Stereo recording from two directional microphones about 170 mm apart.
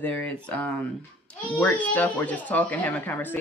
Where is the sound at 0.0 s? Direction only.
10° left (ahead or behind).